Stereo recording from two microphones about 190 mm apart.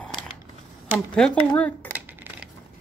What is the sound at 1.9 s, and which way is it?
Coin, 10° right (ahead or behind).